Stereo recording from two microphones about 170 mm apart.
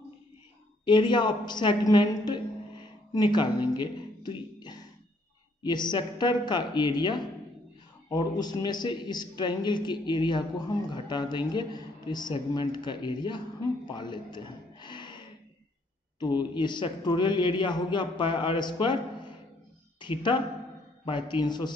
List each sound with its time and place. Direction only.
0.8 s a woman's voice: 25° left (ahead or behind)